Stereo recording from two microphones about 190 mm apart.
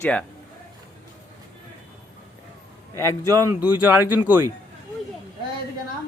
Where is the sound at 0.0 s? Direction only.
5° left (ahead or behind).